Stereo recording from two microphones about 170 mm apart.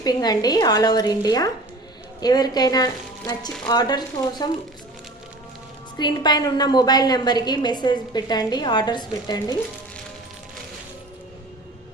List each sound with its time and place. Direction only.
0.0 s a woman's voice: 25° left (ahead or behind)
6.0 s a woman's voice: 25° left (ahead or behind)